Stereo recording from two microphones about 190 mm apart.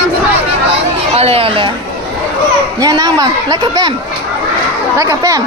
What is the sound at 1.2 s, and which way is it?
Speech, 30° right (ahead or behind).